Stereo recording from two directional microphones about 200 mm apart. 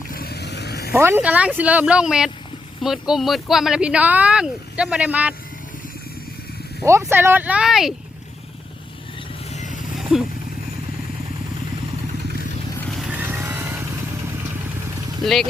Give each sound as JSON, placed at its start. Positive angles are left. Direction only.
{"t": 0.1, "sound": "vehicle", "side_deg": 50}
{"t": 0.9, "sound": "speech", "side_deg": -10}
{"t": 6.8, "sound": "speech", "side_deg": -10}
{"t": 9.9, "sound": "vehicle", "side_deg": 0}
{"t": 13.0, "sound": "vehicle", "side_deg": -5}
{"t": 15.2, "sound": "speech", "side_deg": 0}